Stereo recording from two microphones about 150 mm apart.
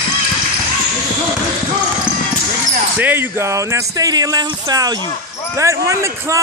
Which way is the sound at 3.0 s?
15° right (ahead or behind).